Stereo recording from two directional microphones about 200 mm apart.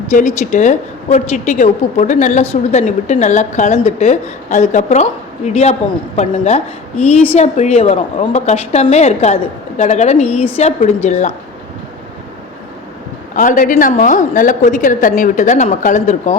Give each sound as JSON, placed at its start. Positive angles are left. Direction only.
{"t": 0.1, "sound": "a woman's voice", "side_deg": 35}
{"t": 13.3, "sound": "a woman's voice", "side_deg": 40}